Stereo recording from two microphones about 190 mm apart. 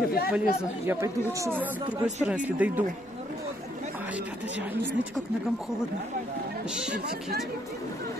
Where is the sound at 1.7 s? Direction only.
20° right (ahead or behind).